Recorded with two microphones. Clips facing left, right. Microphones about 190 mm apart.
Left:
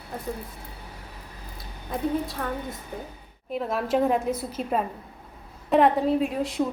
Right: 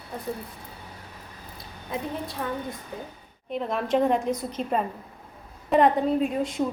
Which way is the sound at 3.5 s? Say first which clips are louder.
Even; 5° left (ahead or behind).